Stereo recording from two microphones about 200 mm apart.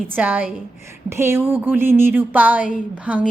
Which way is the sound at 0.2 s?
10° right (ahead or behind).